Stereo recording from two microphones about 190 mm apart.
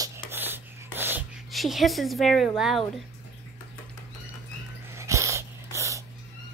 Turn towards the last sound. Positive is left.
turn(degrees=-15)  # may be behind; listen again after turning